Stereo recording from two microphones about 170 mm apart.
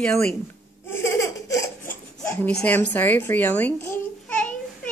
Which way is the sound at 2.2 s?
10° left (ahead or behind).